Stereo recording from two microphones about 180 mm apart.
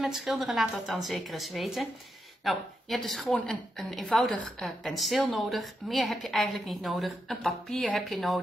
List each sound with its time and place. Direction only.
0.0 s a woman's voice: centre (ahead or behind)